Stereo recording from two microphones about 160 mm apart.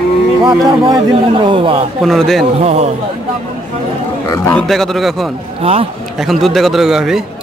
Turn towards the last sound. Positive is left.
turn(degrees=0)  # may be behind; listen again after turning